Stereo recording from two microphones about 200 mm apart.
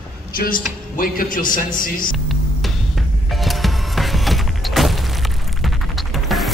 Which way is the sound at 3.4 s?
Centre (ahead or behind).